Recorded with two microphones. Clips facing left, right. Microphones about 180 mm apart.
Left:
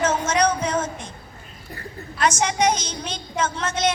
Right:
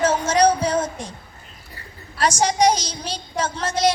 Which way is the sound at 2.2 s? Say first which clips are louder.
Right 2 dB; 35° right (ahead or behind).